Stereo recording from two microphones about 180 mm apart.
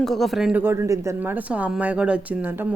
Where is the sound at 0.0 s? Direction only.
Centre (ahead or behind).